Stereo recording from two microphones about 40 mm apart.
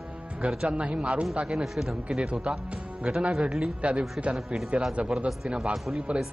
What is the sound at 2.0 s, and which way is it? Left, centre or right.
Speech, right.